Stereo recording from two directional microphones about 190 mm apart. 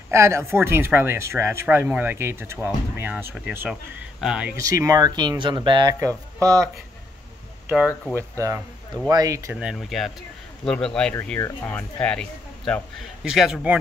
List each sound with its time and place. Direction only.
0.1 s speech: 15° right (ahead or behind)
7.6 s speech: 5° right (ahead or behind)
7.9 s speech: 10° left (ahead or behind)
8.2 s speech: 15° right (ahead or behind)